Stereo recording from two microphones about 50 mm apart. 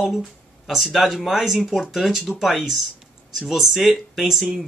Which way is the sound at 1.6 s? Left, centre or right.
Centre.